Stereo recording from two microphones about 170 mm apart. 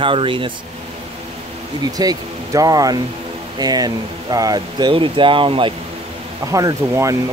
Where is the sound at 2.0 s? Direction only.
20° right (ahead or behind).